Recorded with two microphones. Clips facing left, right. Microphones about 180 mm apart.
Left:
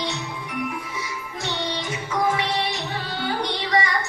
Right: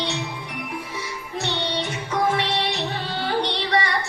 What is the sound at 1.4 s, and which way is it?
Music, 65° right (ahead or behind).